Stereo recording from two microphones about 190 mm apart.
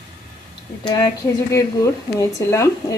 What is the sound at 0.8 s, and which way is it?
A woman's voice, 20° left (ahead or behind).